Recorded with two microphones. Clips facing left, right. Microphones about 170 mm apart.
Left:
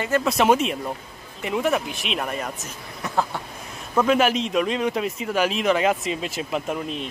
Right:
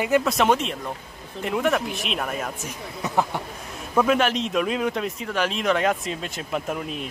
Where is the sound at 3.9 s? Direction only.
Centre (ahead or behind).